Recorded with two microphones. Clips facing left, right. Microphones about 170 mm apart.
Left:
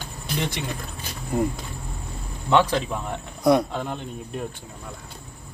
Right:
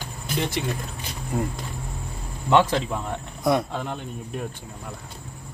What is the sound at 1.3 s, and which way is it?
Speech, centre (ahead or behind).